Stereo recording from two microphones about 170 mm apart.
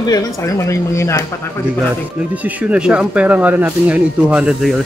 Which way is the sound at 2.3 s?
10° right (ahead or behind).